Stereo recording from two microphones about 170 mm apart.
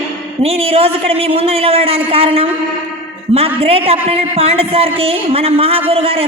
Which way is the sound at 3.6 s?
35° right (ahead or behind).